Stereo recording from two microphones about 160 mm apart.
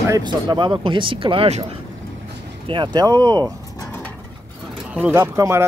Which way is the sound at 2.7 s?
30° right (ahead or behind).